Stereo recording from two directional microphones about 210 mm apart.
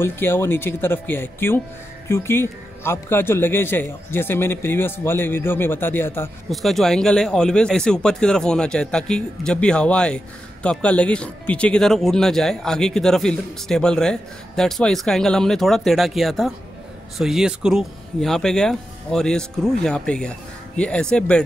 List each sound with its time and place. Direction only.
0.0 s speech: 10° left (ahead or behind)